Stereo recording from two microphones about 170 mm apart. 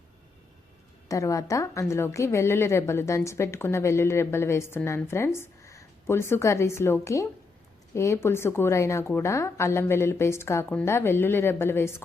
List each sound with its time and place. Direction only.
1.0 s a woman's voice: 20° left (ahead or behind)